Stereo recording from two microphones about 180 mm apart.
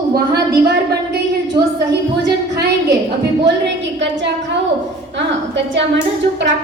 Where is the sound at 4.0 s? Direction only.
75° right (ahead or behind).